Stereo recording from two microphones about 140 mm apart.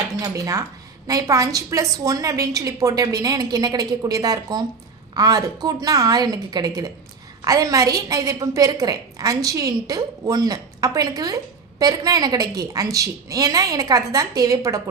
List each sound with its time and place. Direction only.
0.2 s a woman's voice: 25° right (ahead or behind)